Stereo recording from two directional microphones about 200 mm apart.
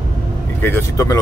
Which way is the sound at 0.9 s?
15° left (ahead or behind).